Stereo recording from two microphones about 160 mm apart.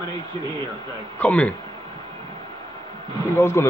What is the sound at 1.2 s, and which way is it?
Speech, 10° left (ahead or behind).